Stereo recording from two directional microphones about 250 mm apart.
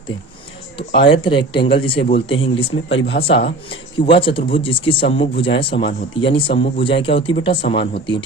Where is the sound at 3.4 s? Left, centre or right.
Left.